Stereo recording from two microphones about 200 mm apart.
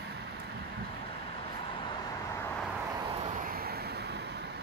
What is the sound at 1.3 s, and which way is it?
Vehicle, 25° left (ahead or behind).